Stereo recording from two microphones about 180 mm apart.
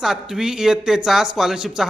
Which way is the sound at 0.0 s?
5° right (ahead or behind).